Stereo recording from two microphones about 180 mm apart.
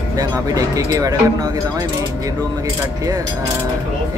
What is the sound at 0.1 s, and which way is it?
Speech, 20° right (ahead or behind).